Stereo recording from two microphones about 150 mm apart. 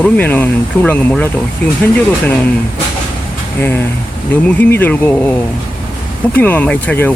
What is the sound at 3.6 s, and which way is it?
Speech, 15° left (ahead or behind).